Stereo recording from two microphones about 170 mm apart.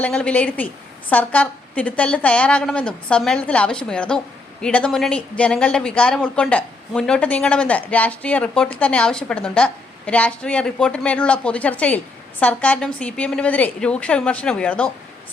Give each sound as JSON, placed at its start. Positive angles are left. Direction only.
{"t": 0.0, "sound": "a woman's voice", "side_deg": 5}